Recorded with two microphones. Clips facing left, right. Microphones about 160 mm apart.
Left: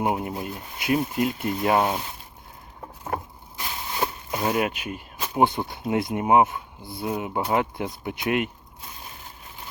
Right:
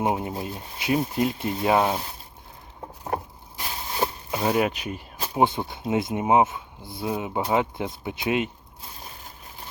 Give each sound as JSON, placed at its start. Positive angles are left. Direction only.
{"t": 0.0, "sound": "speech", "side_deg": -25}
{"t": 2.8, "sound": "a sound", "side_deg": -30}
{"t": 5.4, "sound": "speech", "side_deg": -25}